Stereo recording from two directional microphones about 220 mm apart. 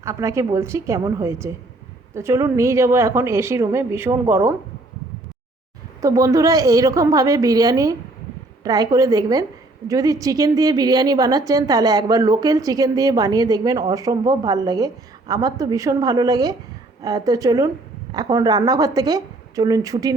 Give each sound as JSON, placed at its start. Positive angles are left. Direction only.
{"t": 0.0, "sound": "a woman's voice", "side_deg": -15}
{"t": 6.0, "sound": "a woman's voice", "side_deg": -15}